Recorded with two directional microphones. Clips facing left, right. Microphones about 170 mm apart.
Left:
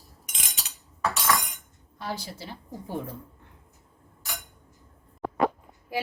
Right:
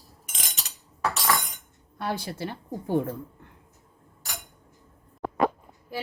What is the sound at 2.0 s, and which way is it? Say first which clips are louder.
A woman's voice: right 5 dB; 60° right (ahead or behind).